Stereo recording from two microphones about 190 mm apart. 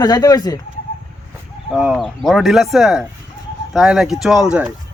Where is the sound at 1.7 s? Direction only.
5° right (ahead or behind).